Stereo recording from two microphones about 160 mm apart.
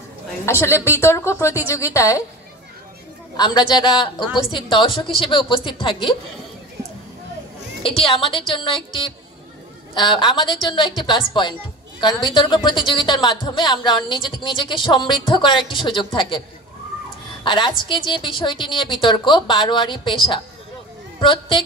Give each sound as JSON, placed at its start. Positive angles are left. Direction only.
{"t": 0.5, "sound": "a woman's voice", "side_deg": 15}
{"t": 3.3, "sound": "a woman's voice", "side_deg": 25}
{"t": 8.1, "sound": "a woman's voice", "side_deg": 35}
{"t": 21.2, "sound": "speech", "side_deg": 30}